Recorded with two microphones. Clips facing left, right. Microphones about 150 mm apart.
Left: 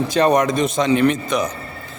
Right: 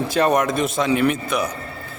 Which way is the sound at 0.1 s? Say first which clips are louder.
Left 2 dB; 5° right (ahead or behind).